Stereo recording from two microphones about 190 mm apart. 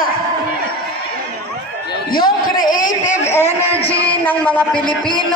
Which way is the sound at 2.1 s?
50° left (ahead or behind).